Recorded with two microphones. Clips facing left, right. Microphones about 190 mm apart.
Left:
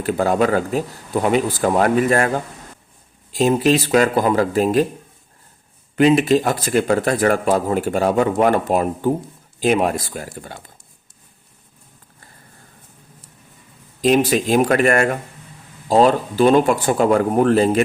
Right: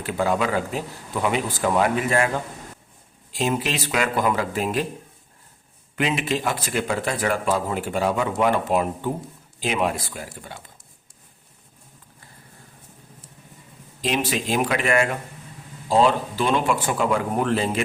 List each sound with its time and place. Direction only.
0.0 s speech: 45° left (ahead or behind)
6.0 s speech: 40° left (ahead or behind)
14.0 s speech: 45° left (ahead or behind)